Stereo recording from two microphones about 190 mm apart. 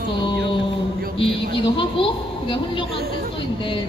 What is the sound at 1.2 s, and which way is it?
A woman's voice, 25° left (ahead or behind).